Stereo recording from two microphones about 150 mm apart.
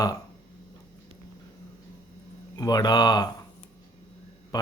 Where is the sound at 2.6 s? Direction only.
25° left (ahead or behind).